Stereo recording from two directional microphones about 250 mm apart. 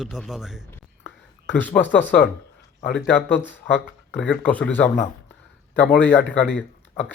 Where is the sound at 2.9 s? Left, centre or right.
Centre.